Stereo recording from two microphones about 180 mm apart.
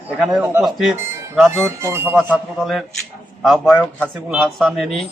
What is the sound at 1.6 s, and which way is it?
Speech, 15° right (ahead or behind).